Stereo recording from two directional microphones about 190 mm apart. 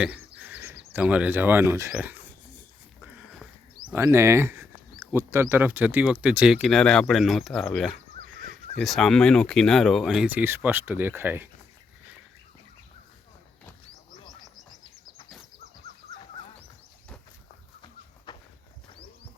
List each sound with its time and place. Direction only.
0.0 s speech: 10° right (ahead or behind)
3.8 s speech: 15° right (ahead or behind)
18.3 s walk: 25° left (ahead or behind)